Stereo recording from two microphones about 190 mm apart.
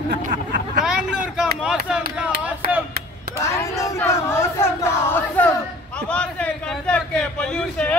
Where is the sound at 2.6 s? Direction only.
50° right (ahead or behind).